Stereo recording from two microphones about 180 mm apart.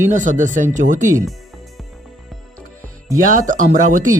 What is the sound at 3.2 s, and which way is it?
Speech, 45° right (ahead or behind).